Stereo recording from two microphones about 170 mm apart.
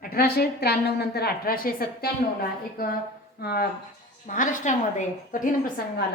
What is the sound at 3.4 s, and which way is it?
Speech, 65° left (ahead or behind).